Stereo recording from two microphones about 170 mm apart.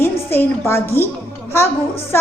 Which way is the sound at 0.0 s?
15° left (ahead or behind).